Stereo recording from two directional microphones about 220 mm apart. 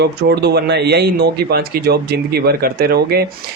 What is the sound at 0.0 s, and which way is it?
Speech, 50° right (ahead or behind).